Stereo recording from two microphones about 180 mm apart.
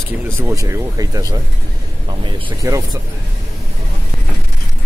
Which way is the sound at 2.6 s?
20° right (ahead or behind).